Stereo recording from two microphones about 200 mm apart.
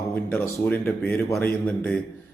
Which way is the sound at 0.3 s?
10° left (ahead or behind).